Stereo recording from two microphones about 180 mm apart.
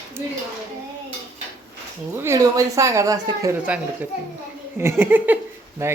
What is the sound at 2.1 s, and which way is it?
Speech, 15° right (ahead or behind).